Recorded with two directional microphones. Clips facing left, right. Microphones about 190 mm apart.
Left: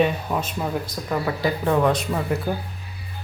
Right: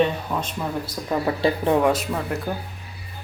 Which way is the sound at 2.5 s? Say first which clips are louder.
Left 2 dB; 10° left (ahead or behind).